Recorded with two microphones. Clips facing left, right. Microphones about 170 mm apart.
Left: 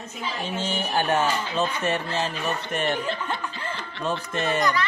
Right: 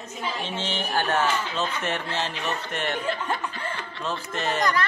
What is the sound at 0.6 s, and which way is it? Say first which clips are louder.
Speech: left 3 dB; 10° left (ahead or behind).